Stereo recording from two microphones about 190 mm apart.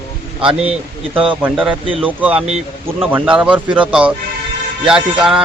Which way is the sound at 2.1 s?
10° right (ahead or behind).